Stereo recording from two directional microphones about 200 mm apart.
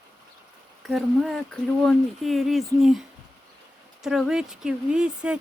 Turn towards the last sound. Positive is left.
turn(degrees=-5)  # may be behind; listen again after turning